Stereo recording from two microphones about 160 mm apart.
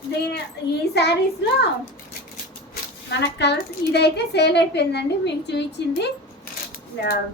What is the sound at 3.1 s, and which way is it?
A woman's voice, 90° left.